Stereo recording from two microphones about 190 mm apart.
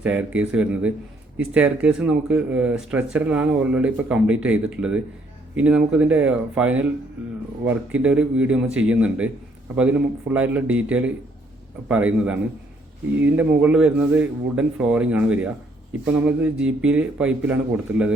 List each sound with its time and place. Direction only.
0.0 s speech: 5° right (ahead or behind)